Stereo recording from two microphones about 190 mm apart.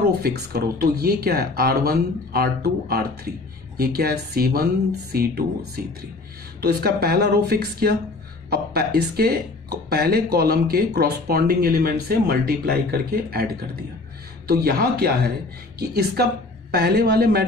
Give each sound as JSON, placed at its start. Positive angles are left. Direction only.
{"t": 0.2, "sound": "speech", "side_deg": -55}
{"t": 6.6, "sound": "speech", "side_deg": -55}
{"t": 14.5, "sound": "speech", "side_deg": -55}